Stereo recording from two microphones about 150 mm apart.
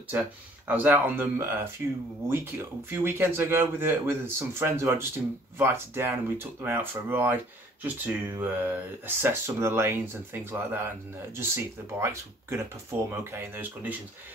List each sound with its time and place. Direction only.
0.7 s speech: 10° right (ahead or behind)